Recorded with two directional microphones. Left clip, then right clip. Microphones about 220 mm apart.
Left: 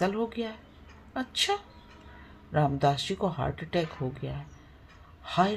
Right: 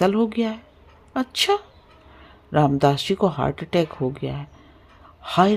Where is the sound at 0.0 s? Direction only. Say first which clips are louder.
Right 9 dB; 50° right (ahead or behind).